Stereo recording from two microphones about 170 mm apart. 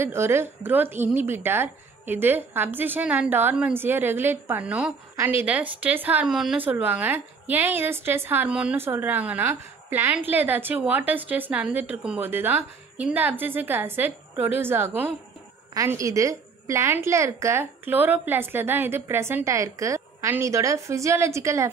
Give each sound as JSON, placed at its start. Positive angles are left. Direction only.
{"t": 0.0, "sound": "speech", "side_deg": -15}